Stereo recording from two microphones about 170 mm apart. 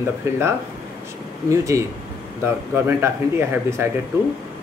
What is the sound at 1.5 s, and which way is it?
Speech, 15° right (ahead or behind).